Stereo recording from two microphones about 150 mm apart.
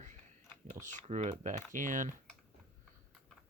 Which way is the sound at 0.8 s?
55° right (ahead or behind).